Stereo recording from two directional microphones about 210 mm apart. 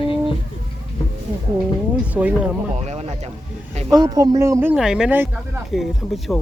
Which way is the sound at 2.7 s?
30° right (ahead or behind).